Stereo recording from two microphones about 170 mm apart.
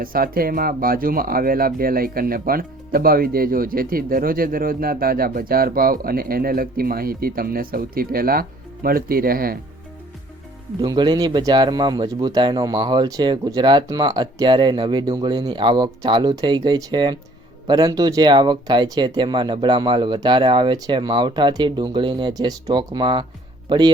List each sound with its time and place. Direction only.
0.0 s speech: 60° right (ahead or behind)
10.8 s speech: 25° right (ahead or behind)